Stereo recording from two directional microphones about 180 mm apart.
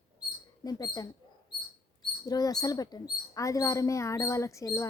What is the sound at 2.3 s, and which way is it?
Speech, 20° left (ahead or behind).